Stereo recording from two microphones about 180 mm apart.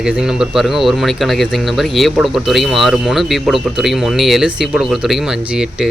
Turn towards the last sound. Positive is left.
turn(degrees=-5)  # may be behind; listen again after turning